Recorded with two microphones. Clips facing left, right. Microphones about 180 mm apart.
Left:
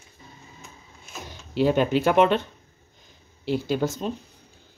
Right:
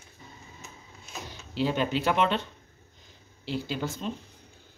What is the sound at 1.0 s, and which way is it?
Speech, 50° left (ahead or behind).